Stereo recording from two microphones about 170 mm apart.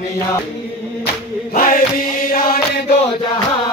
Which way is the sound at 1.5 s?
55° left (ahead or behind).